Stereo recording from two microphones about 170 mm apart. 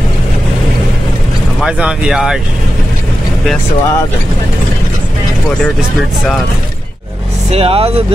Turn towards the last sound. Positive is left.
turn(degrees=-35)  # may be behind; listen again after turning